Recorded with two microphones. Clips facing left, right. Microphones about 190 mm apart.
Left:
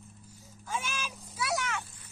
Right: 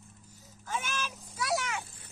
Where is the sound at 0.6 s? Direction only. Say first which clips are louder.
Right 1 dB; 10° left (ahead or behind).